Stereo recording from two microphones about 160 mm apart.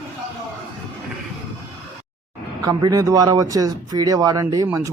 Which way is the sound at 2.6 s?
20° right (ahead or behind).